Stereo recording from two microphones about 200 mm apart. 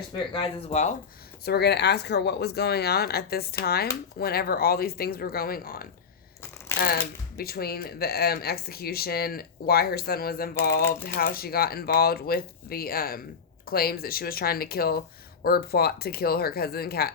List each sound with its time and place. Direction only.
0.3 s speech: 35° left (ahead or behind)
1.5 s speech: 55° left (ahead or behind)